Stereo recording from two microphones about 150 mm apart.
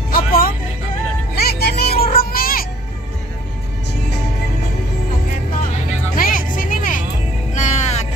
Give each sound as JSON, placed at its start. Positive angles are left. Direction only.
{"t": 0.1, "sound": "vehicle", "side_deg": 75}
{"t": 1.3, "sound": "music", "side_deg": 90}
{"t": 6.1, "sound": "music", "side_deg": 70}
{"t": 7.5, "sound": "music", "side_deg": 50}